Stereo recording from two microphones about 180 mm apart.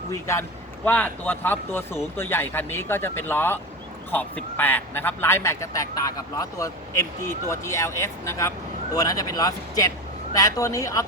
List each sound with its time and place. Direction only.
0.1 s a woman's voice: 15° left (ahead or behind)